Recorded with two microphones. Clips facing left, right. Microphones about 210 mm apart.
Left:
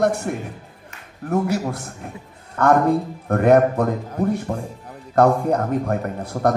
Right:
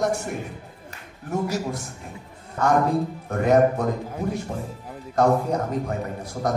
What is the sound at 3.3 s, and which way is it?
A man's voice, 60° left (ahead or behind).